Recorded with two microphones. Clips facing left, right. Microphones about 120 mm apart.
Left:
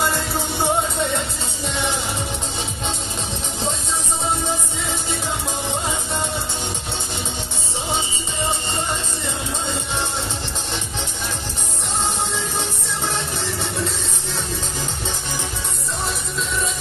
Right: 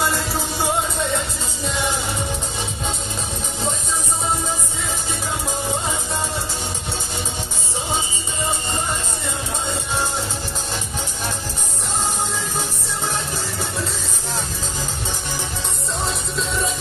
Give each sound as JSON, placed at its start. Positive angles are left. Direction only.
{"t": 0.4, "sound": "music", "side_deg": 25}